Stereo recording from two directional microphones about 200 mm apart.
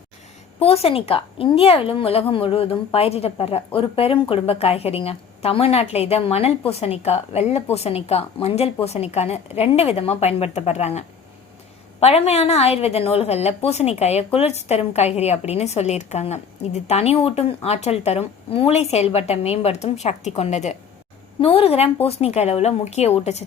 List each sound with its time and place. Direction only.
0.6 s a woman's voice: 30° left (ahead or behind)